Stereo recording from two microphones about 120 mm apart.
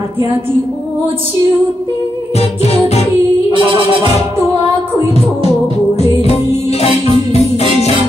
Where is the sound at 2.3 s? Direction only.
60° left (ahead or behind).